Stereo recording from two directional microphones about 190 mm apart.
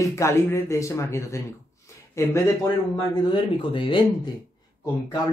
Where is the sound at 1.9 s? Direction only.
15° left (ahead or behind).